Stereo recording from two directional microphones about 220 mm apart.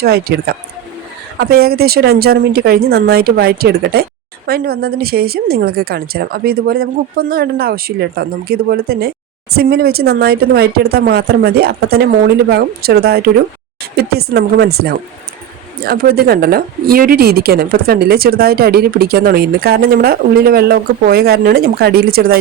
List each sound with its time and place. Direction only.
0.0 s a woman's voice: 45° right (ahead or behind)